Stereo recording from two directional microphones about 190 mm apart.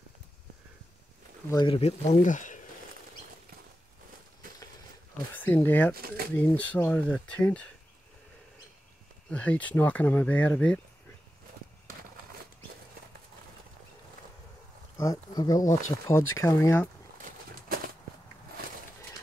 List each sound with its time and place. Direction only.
1.5 s speech: 20° left (ahead or behind)
1.8 s speech: 35° left (ahead or behind)
5.3 s speech: 10° left (ahead or behind)
5.9 s speech: 50° right (ahead or behind)
6.3 s speech: 10° left (ahead or behind)
9.3 s speech: 5° left (ahead or behind)
15.0 s speech: 20° left (ahead or behind)